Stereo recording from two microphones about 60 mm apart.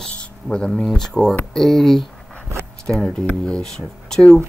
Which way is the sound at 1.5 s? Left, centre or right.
Centre.